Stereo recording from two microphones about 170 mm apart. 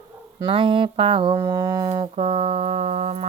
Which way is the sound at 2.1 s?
35° right (ahead or behind).